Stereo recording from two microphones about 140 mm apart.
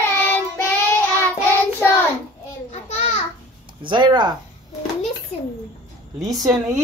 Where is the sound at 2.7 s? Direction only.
50° left (ahead or behind).